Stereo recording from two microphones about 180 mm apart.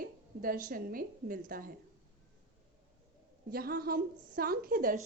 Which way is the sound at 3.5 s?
60° right (ahead or behind).